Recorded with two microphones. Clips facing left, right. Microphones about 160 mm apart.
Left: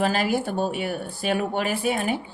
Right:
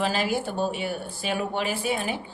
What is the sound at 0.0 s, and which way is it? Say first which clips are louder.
A woman's voice: left 3 dB; 55° left (ahead or behind).